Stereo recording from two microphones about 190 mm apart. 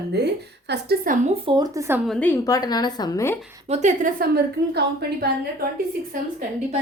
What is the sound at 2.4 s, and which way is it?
Speech, 20° left (ahead or behind).